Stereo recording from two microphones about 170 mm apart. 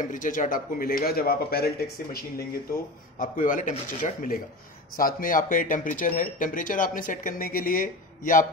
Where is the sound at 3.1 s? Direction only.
50° left (ahead or behind).